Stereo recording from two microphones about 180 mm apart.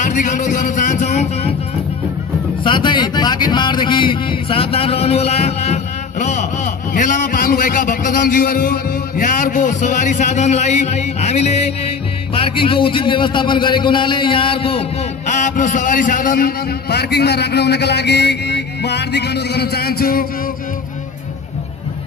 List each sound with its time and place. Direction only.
0.0 s a man's voice: 45° left (ahead or behind)
2.6 s a man's voice: 25° left (ahead or behind); by 20.2 s 55° left (ahead or behind)